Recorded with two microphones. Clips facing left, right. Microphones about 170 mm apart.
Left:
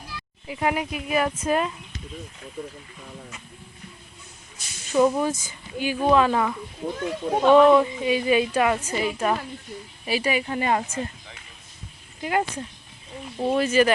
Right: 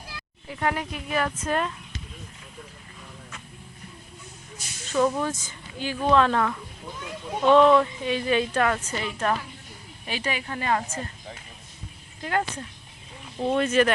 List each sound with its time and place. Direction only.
0.4 s a woman's voice: 10° left (ahead or behind)
4.9 s a woman's voice: 15° left (ahead or behind)
6.8 s speech: 55° left (ahead or behind)
7.5 s a woman's voice: 10° left (ahead or behind)
12.2 s a woman's voice: 10° left (ahead or behind)